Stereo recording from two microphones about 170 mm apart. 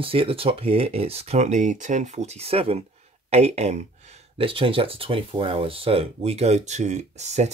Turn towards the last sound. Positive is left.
turn(degrees=-40)  # may be behind; listen again after turning